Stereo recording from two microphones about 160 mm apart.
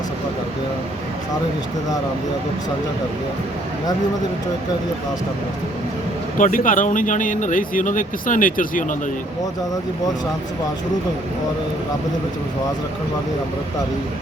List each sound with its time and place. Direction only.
6.3 s speech: 55° left (ahead or behind)